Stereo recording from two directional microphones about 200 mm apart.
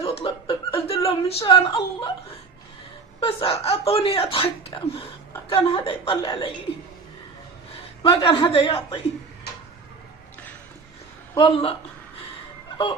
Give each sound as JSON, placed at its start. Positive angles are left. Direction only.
{"t": 0.0, "sound": "chuckle", "side_deg": 30}
{"t": 3.2, "sound": "speech", "side_deg": 25}
{"t": 8.0, "sound": "speech", "side_deg": 25}
{"t": 11.3, "sound": "speech", "side_deg": 25}